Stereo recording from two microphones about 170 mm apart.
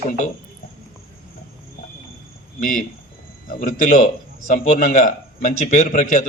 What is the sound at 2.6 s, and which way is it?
A man's voice, 50° left (ahead or behind).